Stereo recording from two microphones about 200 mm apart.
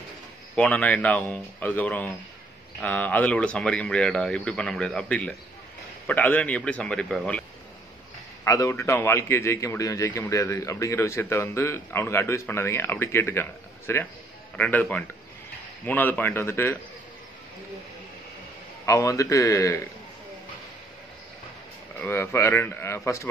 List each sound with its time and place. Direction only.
0.6 s a man's voice: 5° left (ahead or behind)
8.5 s a man's voice: 15° left (ahead or behind)
18.9 s a man's voice: 15° left (ahead or behind)
21.9 s a man's voice: 10° left (ahead or behind)